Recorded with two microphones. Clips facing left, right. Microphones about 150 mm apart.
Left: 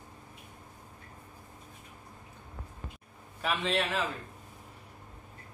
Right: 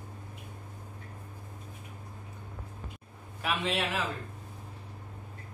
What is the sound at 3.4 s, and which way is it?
Speech, 5° right (ahead or behind).